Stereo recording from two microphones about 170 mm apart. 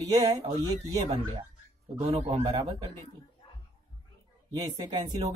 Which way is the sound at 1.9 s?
35° right (ahead or behind).